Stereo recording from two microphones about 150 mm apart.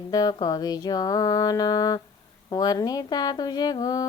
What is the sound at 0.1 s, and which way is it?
Speech, 25° left (ahead or behind).